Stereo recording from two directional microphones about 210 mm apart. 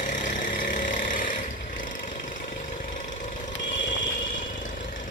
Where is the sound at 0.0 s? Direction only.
35° left (ahead or behind).